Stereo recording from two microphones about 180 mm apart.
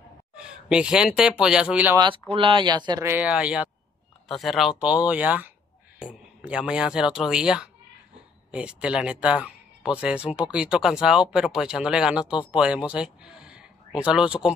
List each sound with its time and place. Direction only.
0.4 s speech: 5° right (ahead or behind)
2.3 s speech: 30° right (ahead or behind); by 14.5 s 5° right (ahead or behind)